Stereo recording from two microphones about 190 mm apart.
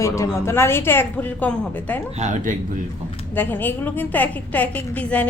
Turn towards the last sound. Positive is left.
turn(degrees=5)  # may be behind; listen again after turning